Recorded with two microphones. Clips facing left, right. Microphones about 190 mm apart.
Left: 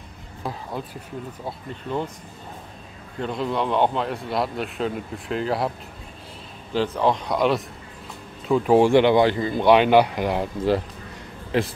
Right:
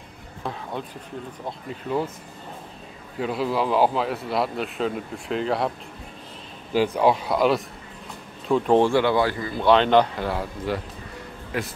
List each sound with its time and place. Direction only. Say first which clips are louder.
0.4 s a man's voice: even; 5° left (ahead or behind)
3.2 s a man's voice: right 1 dB; 5° right (ahead or behind)
6.7 s a man's voice: right 2 dB; 10° right (ahead or behind); by 8.9 s 5° left (ahead or behind)
8.9 s speech: left 4 dB; 20° left (ahead or behind)